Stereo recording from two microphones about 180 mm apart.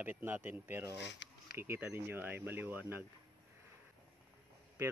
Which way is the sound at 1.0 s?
75° left (ahead or behind).